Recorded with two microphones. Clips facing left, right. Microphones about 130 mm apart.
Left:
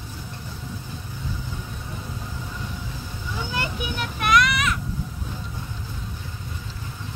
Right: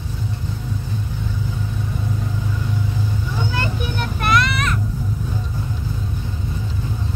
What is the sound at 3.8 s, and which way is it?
Vehicle, centre (ahead or behind).